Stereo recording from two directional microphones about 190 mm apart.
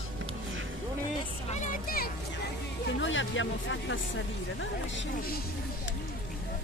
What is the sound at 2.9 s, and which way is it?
Music, 80° left.